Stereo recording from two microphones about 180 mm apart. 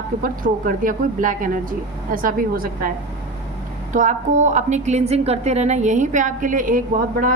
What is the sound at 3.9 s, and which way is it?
A woman's voice, 45° right (ahead or behind).